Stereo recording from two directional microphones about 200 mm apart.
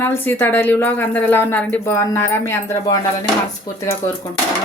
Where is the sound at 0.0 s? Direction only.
10° left (ahead or behind).